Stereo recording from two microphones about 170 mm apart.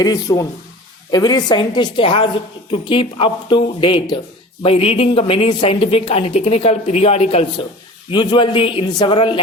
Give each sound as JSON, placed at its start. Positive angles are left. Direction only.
{"t": 0.0, "sound": "speech", "side_deg": 20}